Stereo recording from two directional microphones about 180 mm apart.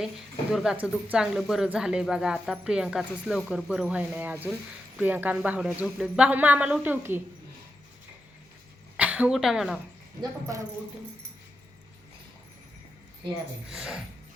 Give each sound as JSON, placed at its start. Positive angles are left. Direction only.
{"t": 0.5, "sound": "speech", "side_deg": -5}
{"t": 9.0, "sound": "a woman's voice", "side_deg": -10}
{"t": 10.2, "sound": "speech", "side_deg": -20}
{"t": 13.7, "sound": "speech", "side_deg": -5}